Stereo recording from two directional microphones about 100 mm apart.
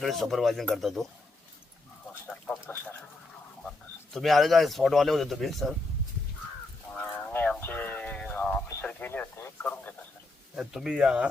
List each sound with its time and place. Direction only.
0.0 s speech: centre (ahead or behind)
2.3 s a sound: 10° left (ahead or behind)
3.6 s speech: 5° left (ahead or behind)
6.9 s a sound: 15° left (ahead or behind)
8.8 s speech: 20° left (ahead or behind)
10.5 s speech: 5° right (ahead or behind)